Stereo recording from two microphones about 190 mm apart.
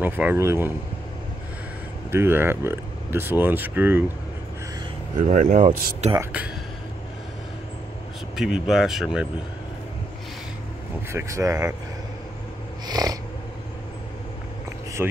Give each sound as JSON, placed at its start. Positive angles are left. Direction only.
{"t": 0.0, "sound": "speech", "side_deg": -10}
{"t": 2.0, "sound": "speech", "side_deg": -10}
{"t": 5.3, "sound": "speech", "side_deg": -40}
{"t": 6.1, "sound": "speech", "side_deg": -5}
{"t": 8.4, "sound": "speech", "side_deg": -5}
{"t": 11.1, "sound": "speech", "side_deg": -15}
{"t": 12.8, "sound": "a sound", "side_deg": -20}
{"t": 15.0, "sound": "speech", "side_deg": -10}